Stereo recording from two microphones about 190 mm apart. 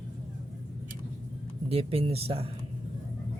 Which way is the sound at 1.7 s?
30° right (ahead or behind).